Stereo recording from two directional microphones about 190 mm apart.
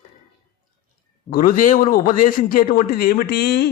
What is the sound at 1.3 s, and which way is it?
A man's voice, 45° left (ahead or behind).